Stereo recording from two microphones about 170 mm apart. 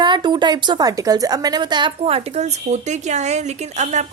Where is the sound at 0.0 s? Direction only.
25° right (ahead or behind).